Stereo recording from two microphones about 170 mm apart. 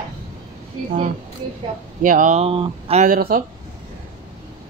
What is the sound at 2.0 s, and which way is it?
Speech, 50° right (ahead or behind).